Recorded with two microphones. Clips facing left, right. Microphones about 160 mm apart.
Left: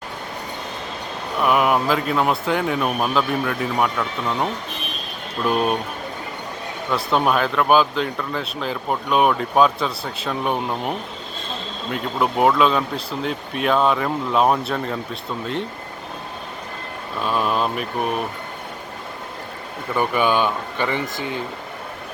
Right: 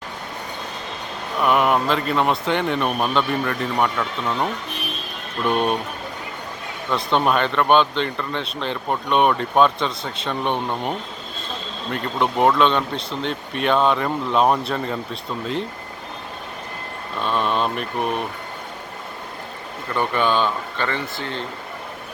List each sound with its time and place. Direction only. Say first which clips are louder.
1.4 s speech: even; 5° left (ahead or behind)
6.9 s speech: even; 5° left (ahead or behind)
17.2 s speech: even; 5° left (ahead or behind)
19.9 s speech: left 1 dB; 10° left (ahead or behind)